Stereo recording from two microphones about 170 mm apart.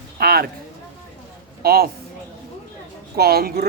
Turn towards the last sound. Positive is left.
turn(degrees=-65)  # may be behind; listen again after turning